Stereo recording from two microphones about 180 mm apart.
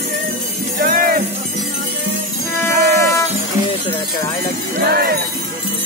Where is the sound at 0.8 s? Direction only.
55° right (ahead or behind).